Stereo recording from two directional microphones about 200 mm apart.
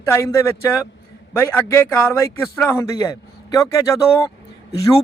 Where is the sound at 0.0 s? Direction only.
15° left (ahead or behind).